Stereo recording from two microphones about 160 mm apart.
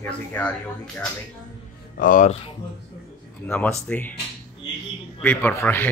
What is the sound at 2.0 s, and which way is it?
Speech, 55° left (ahead or behind).